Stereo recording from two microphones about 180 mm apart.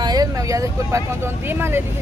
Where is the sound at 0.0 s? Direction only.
20° right (ahead or behind).